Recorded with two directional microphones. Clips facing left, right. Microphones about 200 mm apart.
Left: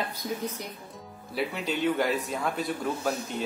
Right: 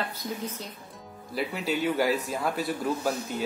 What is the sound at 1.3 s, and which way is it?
A man's voice, 5° right (ahead or behind).